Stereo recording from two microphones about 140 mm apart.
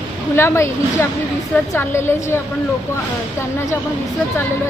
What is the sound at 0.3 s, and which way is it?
A woman's voice, 20° left (ahead or behind).